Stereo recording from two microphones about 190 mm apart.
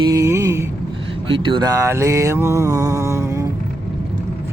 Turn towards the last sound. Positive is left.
turn(degrees=-15)  # may be behind; listen again after turning